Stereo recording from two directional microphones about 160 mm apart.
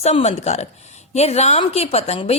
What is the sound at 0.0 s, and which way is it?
A woman's voice, 40° left (ahead or behind).